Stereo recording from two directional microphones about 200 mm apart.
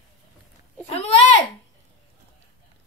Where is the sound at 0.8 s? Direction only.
30° left (ahead or behind).